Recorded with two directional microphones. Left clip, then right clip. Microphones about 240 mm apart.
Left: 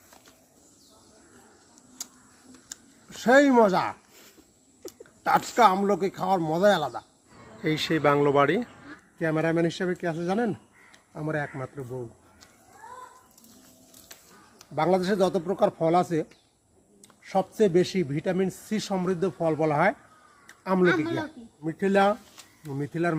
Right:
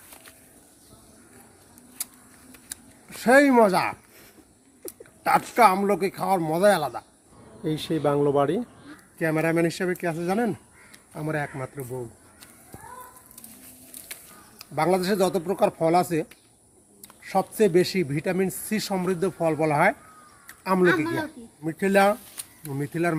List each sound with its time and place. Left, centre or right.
3.1 s a man's voice: centre
14.6 s a man's voice: centre
17.2 s a man's voice: centre
20.5 s a sound: centre
20.8 s speech: centre
21.6 s speech: centre